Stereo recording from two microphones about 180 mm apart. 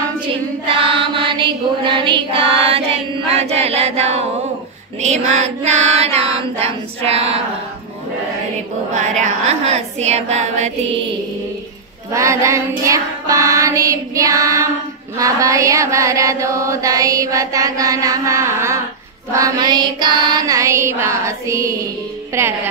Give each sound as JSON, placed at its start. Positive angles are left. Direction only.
{"t": 0.7, "sound": "music", "side_deg": -30}
{"t": 3.3, "sound": "chant", "side_deg": -35}
{"t": 5.0, "sound": "child singing", "side_deg": -40}
{"t": 9.2, "sound": "child singing", "side_deg": -40}
{"t": 12.1, "sound": "chant", "side_deg": -15}